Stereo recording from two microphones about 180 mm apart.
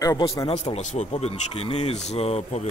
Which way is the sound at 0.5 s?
35° left (ahead or behind).